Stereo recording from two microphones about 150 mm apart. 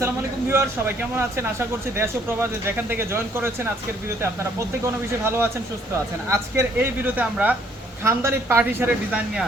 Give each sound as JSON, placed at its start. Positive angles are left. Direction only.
{"t": 0.5, "sound": "speech", "side_deg": -15}
{"t": 5.2, "sound": "speech", "side_deg": -15}